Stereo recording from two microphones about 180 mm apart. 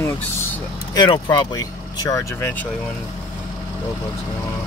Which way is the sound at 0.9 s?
25° left (ahead or behind).